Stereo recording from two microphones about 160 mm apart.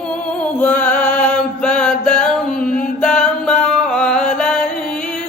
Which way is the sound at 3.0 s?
5° left (ahead or behind).